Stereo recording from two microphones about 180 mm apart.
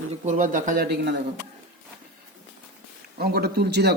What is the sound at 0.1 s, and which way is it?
Speech, 45° right (ahead or behind).